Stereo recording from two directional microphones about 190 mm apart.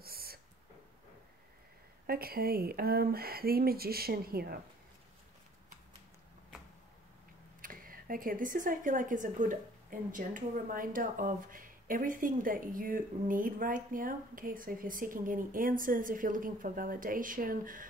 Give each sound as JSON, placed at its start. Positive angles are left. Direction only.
{"t": 0.0, "sound": "a sound", "side_deg": -55}
{"t": 2.0, "sound": "speech", "side_deg": -50}
{"t": 7.6, "sound": "speech", "side_deg": -45}